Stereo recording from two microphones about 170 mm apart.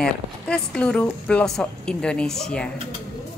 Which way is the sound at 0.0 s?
5° left (ahead or behind).